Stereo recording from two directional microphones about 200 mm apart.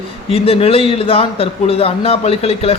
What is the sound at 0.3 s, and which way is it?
A man's voice, 30° left (ahead or behind).